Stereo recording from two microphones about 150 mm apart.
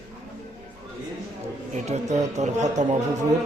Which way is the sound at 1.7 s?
50° right (ahead or behind).